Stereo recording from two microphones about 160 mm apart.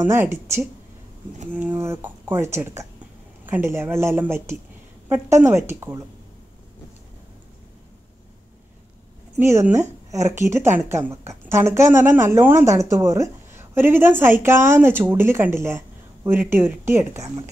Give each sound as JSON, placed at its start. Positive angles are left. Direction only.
{"t": 0.0, "sound": "a woman's voice", "side_deg": -15}
{"t": 9.4, "sound": "a woman's voice", "side_deg": -15}